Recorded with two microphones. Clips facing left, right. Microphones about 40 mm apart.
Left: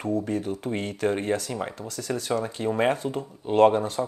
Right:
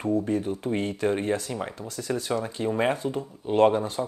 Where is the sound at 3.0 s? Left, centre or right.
Left.